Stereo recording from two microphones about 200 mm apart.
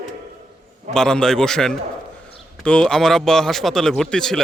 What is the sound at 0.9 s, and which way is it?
A man's voice, 5° left (ahead or behind).